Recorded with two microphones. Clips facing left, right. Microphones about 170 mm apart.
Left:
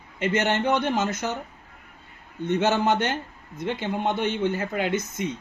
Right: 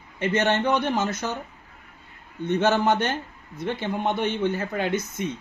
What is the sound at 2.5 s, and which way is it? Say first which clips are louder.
Speech: right 1 dB; 15° left (ahead or behind).